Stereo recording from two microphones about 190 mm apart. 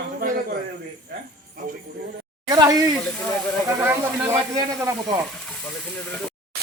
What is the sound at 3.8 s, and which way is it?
A man's voice, 10° right (ahead or behind).